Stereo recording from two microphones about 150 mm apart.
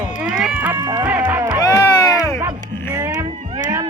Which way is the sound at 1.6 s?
20° left (ahead or behind).